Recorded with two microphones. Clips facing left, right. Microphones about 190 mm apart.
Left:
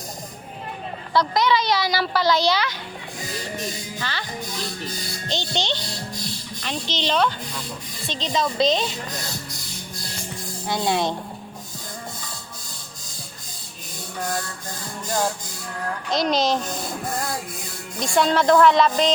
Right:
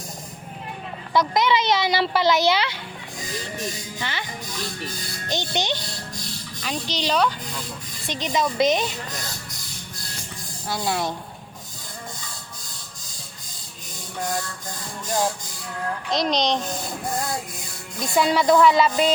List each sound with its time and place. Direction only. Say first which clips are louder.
1.1 s speech: even; 20° right (ahead or behind)
4.0 s speech: right 1 dB; 20° right (ahead or behind)
5.3 s speech: right 1 dB; 15° right (ahead or behind)
6.9 s speech: even; 5° right (ahead or behind)
8.0 s speech: even; 15° right (ahead or behind)
10.7 s speech: left 3 dB; 20° left (ahead or behind)
16.0 s speech: left 2 dB; centre (ahead or behind)
18.0 s speech: left 1 dB; 5° right (ahead or behind)